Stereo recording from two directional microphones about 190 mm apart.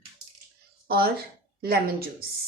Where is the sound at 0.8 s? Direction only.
55° right (ahead or behind).